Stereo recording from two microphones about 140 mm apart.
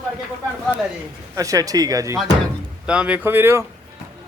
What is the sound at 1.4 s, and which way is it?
Speech, 25° right (ahead or behind).